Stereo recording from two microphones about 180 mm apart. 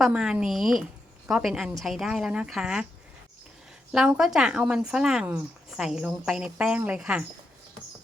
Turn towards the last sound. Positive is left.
turn(degrees=-5)  # may be behind; listen again after turning